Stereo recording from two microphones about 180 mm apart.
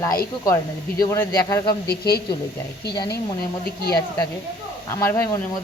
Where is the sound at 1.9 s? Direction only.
60° left (ahead or behind).